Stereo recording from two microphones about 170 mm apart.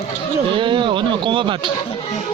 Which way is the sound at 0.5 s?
30° right (ahead or behind).